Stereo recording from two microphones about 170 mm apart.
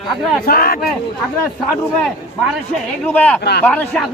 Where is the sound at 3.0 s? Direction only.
10° left (ahead or behind).